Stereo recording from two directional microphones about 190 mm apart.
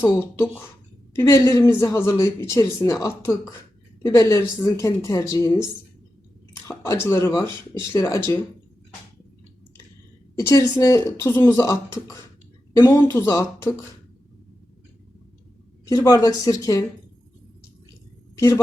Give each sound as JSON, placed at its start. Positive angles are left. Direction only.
{"t": 0.0, "sound": "speech", "side_deg": 10}
{"t": 6.7, "sound": "speech", "side_deg": 15}
{"t": 10.3, "sound": "speech", "side_deg": 15}
{"t": 15.9, "sound": "speech", "side_deg": 20}
{"t": 18.3, "sound": "a woman's voice", "side_deg": 15}